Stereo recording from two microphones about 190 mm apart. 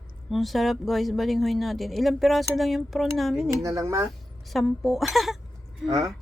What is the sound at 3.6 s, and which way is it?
Speech, 15° right (ahead or behind).